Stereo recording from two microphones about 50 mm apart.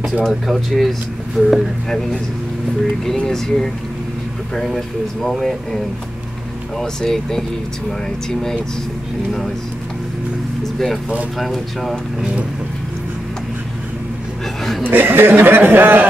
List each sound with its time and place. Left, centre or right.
0.2 s speech: centre
3.3 s speech: centre
6.8 s speech: centre
11.3 s speech: centre
14.9 s speech: right